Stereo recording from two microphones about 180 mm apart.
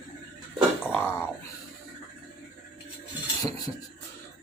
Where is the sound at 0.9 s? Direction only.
10° left (ahead or behind).